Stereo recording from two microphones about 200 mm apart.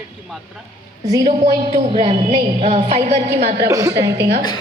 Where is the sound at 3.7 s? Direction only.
15° right (ahead or behind).